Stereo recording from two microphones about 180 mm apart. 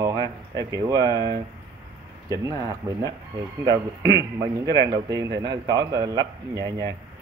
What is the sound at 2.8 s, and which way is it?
Speech, 20° right (ahead or behind).